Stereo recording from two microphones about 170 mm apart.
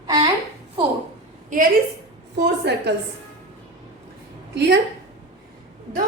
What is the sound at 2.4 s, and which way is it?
Speech, 80° right.